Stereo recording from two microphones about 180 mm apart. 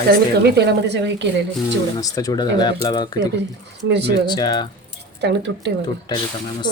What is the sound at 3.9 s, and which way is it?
Speech, 70° right (ahead or behind).